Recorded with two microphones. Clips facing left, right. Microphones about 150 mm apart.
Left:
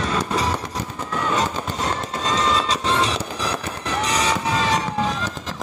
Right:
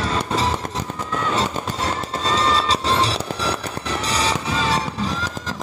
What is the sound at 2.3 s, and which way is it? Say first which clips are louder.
Train: right 1 dB; 30° right (ahead or behind).